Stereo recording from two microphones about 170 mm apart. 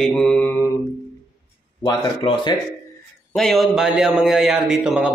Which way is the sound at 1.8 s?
25° left (ahead or behind).